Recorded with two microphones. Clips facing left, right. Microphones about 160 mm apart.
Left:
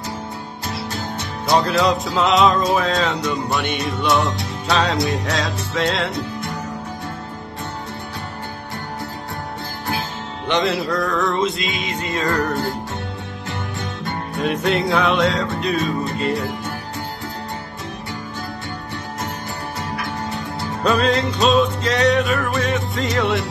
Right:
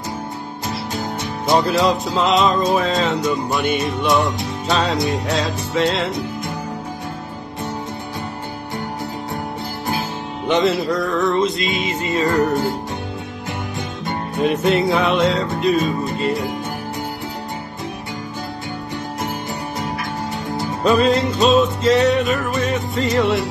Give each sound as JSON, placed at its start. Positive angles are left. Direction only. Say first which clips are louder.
{"t": 1.7, "sound": "music", "louder": "right 1 dB", "side_deg": 0}
{"t": 10.4, "sound": "music", "louder": "right 3 dB", "side_deg": 0}
{"t": 12.3, "sound": "music", "louder": "right 3 dB", "side_deg": -15}
{"t": 14.4, "sound": "music", "louder": "right 3 dB", "side_deg": 0}
{"t": 20.8, "sound": "music", "louder": "right 3 dB", "side_deg": 0}